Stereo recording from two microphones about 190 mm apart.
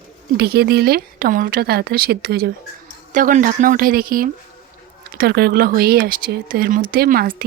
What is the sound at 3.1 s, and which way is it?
A woman's voice, 45° right (ahead or behind).